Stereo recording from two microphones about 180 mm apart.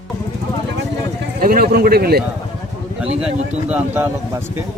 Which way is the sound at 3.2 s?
10° right (ahead or behind).